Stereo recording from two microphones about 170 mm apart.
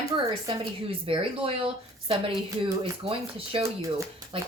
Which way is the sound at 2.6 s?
30° right (ahead or behind).